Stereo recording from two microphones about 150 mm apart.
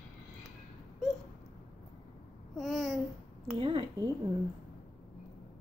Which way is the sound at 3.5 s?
35° right (ahead or behind).